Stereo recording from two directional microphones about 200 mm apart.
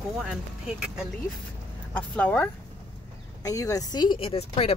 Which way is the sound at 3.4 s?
15° left (ahead or behind).